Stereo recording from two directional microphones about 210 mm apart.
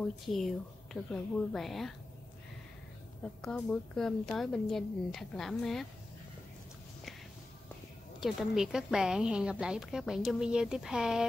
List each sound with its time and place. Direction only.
0.3 s a woman's voice: centre (ahead or behind)
3.4 s a woman's voice: 5° left (ahead or behind)
8.2 s a woman's voice: centre (ahead or behind)